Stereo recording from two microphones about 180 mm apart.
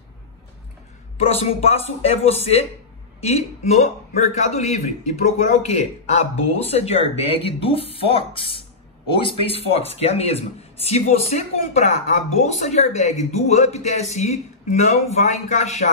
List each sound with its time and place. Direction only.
1.3 s speech: 35° left (ahead or behind)